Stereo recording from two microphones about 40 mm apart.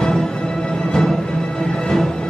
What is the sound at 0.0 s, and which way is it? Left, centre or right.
Music, centre.